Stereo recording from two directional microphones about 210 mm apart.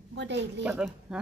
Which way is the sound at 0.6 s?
5° right (ahead or behind).